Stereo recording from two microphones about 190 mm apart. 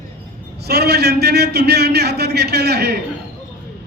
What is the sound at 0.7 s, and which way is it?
A man's voice, 60° right (ahead or behind).